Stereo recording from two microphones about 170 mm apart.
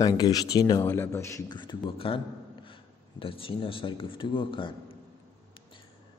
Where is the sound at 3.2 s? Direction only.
30° left (ahead or behind).